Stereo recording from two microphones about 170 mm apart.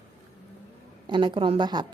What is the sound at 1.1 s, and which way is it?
Speech, 30° right (ahead or behind).